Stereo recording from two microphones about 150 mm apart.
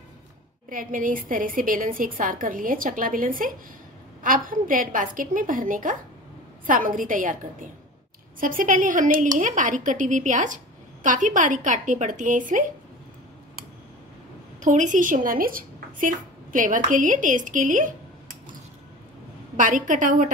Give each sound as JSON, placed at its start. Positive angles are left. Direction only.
{"t": 0.7, "sound": "a woman's voice", "side_deg": -65}
{"t": 8.4, "sound": "a woman's voice", "side_deg": -65}
{"t": 14.6, "sound": "speech", "side_deg": -55}
{"t": 19.5, "sound": "a woman's voice", "side_deg": -60}